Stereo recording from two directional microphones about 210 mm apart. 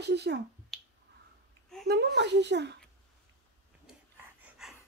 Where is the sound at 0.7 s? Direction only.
Centre (ahead or behind).